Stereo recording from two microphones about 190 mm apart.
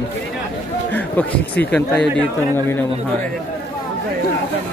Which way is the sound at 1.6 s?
5° left (ahead or behind).